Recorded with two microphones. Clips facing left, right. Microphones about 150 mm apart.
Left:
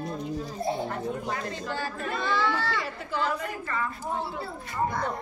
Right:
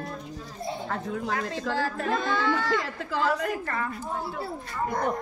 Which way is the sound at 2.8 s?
90° right.